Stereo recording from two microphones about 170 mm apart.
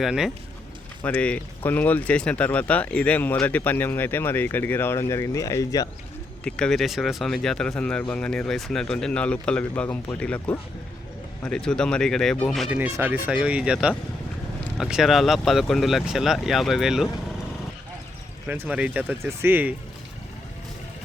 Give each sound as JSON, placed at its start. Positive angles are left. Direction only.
{"t": 0.0, "sound": "speech", "side_deg": 0}
{"t": 1.0, "sound": "speech", "side_deg": 10}
{"t": 6.4, "sound": "speech", "side_deg": 5}
{"t": 18.4, "sound": "speech", "side_deg": -10}